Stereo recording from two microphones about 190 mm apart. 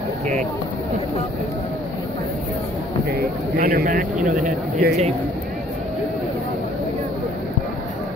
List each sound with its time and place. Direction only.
3.1 s speech: 55° right (ahead or behind)